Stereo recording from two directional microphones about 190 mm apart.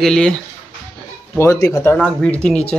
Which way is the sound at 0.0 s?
5° left (ahead or behind).